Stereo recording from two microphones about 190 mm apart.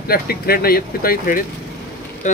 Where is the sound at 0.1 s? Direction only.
55° left (ahead or behind).